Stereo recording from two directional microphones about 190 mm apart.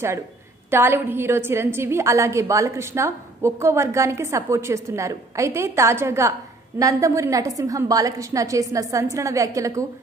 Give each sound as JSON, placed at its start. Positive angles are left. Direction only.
{"t": 0.7, "sound": "a woman's voice", "side_deg": -10}